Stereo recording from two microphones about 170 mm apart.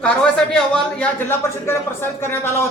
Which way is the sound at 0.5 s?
5° left (ahead or behind).